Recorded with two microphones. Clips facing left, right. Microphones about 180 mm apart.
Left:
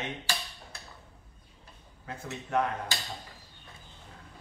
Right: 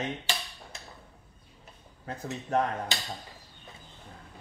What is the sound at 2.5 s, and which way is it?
Speech, 40° right (ahead or behind).